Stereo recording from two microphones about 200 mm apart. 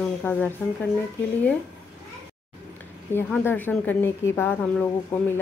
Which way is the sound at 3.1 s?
5° left (ahead or behind).